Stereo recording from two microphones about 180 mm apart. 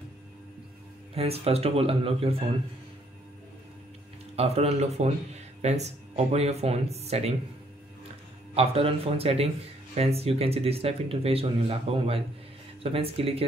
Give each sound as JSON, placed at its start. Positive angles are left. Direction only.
{"t": 1.1, "sound": "speech", "side_deg": -35}
{"t": 4.4, "sound": "speech", "side_deg": -35}
{"t": 8.5, "sound": "speech", "side_deg": -30}